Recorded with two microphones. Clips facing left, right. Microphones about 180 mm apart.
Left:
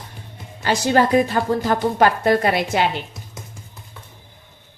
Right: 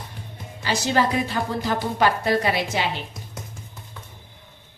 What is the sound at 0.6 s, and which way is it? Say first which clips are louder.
A woman's voice: left 5 dB; 55° left (ahead or behind).